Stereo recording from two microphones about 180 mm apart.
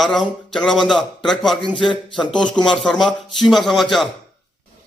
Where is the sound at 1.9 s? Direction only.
25° left (ahead or behind).